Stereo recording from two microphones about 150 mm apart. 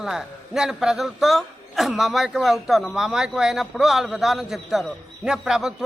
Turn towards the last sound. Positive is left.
turn(degrees=-5)  # may be behind; listen again after turning